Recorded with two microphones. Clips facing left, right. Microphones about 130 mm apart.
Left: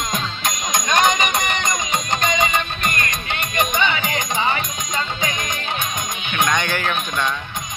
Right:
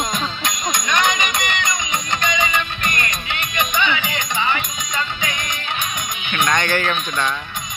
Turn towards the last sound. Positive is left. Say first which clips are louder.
# right 1 dB
turn(degrees=10)  # may be behind; listen again after turning